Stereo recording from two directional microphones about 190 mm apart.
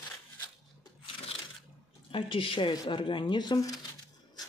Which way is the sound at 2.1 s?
30° left (ahead or behind).